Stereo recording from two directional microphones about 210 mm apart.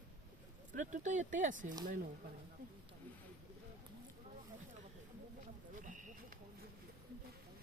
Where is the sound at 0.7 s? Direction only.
35° right (ahead or behind).